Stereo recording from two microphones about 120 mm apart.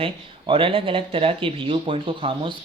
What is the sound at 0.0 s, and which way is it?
Speech, 50° right (ahead or behind).